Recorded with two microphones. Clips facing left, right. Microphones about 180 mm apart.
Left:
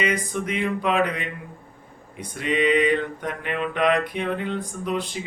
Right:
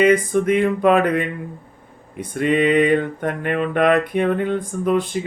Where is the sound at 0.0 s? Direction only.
50° right (ahead or behind).